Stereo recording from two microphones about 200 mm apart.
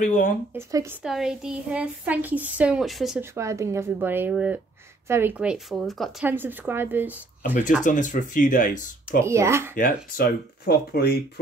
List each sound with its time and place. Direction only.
0.0 s speech: 40° left (ahead or behind)
0.6 s a woman's voice: 15° right (ahead or behind)
1.0 s a woman's voice: 5° right (ahead or behind)
3.2 s a woman's voice: 15° right (ahead or behind)
7.8 s speech: 40° left (ahead or behind)
9.2 s a woman's voice: 15° right (ahead or behind)
10.1 s speech: 50° left (ahead or behind)